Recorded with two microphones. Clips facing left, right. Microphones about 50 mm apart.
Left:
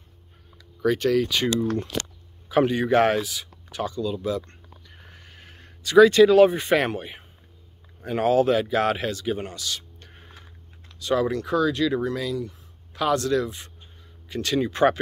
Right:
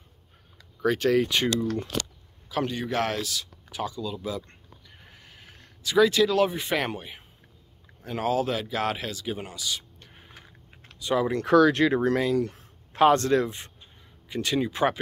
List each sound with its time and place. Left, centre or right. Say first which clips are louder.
0.8 s speech: left 1 dB; centre
2.5 s speech: left 8 dB; centre
3.7 s speech: left 4 dB; centre
4.8 s a sound: left 2 dB; centre
6.2 s speech: left 8 dB; centre
11.0 s speech: left 2 dB; centre
11.4 s speech: right 4 dB; right
12.4 s speech: right 5 dB; right
12.9 s speech: right 3 dB; right
14.3 s speech: left 2 dB; centre